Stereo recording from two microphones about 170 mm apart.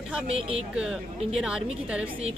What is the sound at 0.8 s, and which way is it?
Speech, 5° right (ahead or behind).